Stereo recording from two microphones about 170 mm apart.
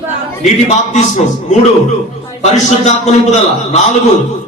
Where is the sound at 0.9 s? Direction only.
45° left (ahead or behind).